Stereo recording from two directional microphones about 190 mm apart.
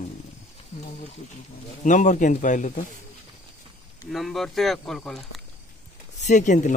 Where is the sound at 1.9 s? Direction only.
40° left (ahead or behind).